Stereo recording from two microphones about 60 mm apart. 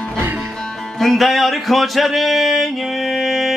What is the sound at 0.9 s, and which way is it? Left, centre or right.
Music, centre.